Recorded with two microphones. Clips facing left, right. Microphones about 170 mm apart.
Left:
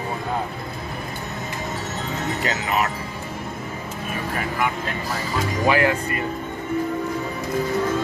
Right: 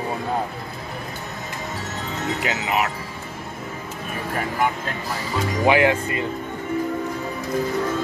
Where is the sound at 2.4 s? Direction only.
10° right (ahead or behind).